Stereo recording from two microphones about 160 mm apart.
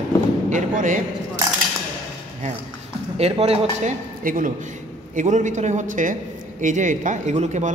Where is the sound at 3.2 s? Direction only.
40° right (ahead or behind).